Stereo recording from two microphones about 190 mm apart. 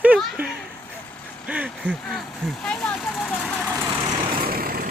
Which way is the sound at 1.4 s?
5° right (ahead or behind).